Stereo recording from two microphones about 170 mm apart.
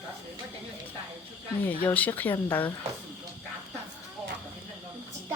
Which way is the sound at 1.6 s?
10° left (ahead or behind).